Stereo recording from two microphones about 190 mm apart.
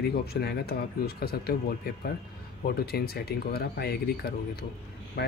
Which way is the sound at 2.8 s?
55° left (ahead or behind).